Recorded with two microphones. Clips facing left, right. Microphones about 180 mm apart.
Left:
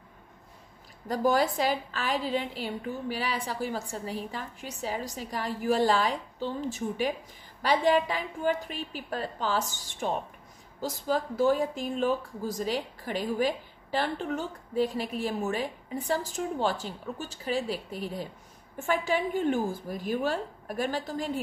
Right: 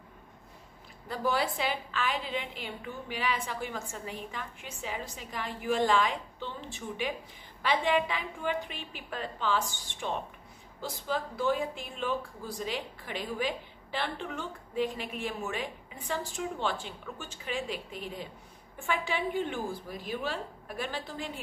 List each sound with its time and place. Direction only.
1.0 s a woman's voice: 45° left (ahead or behind)